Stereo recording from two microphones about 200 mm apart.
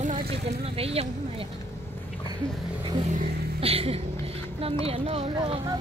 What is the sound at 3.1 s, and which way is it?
Music, 50° right (ahead or behind).